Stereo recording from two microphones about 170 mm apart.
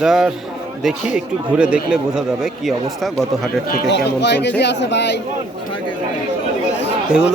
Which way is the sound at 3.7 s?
75° left (ahead or behind).